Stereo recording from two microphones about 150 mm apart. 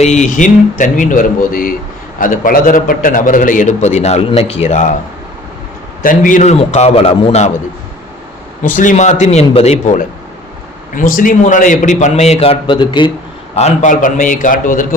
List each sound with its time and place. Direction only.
0.0 s a man's voice: 50° left (ahead or behind)
6.0 s a man's voice: 65° left (ahead or behind); by 7.5 s 45° left (ahead or behind)
8.6 s a man's voice: 60° left (ahead or behind)
10.9 s a man's voice: 65° left (ahead or behind); by 13.1 s 30° left (ahead or behind)
13.6 s a man's voice: 45° left (ahead or behind)
13.9 s a man's voice: 60° left (ahead or behind)